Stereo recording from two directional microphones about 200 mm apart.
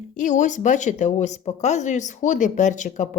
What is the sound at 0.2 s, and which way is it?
Speech, 40° left (ahead or behind).